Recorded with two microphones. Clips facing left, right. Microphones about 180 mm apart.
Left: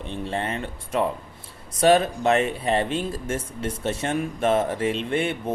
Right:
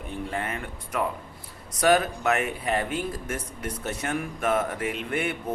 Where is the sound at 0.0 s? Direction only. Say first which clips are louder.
Left 3 dB; 25° left (ahead or behind).